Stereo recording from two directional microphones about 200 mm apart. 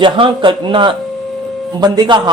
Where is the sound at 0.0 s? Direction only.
25° right (ahead or behind).